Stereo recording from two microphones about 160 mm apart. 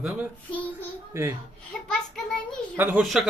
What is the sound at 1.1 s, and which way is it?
Speech, 15° right (ahead or behind).